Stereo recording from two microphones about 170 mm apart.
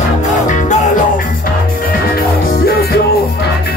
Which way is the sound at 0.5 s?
45° left (ahead or behind).